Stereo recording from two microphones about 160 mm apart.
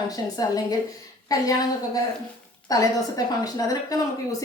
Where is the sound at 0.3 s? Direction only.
25° left (ahead or behind).